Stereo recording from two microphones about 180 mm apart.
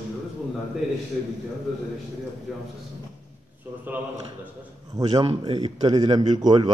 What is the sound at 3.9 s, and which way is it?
A man's voice, 10° right (ahead or behind).